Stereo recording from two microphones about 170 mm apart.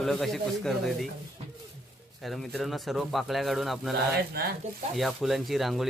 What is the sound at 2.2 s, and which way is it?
A man's voice, centre (ahead or behind).